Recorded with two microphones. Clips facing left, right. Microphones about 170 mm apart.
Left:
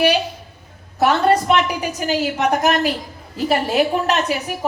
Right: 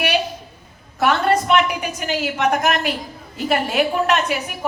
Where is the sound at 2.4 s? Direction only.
35° left (ahead or behind).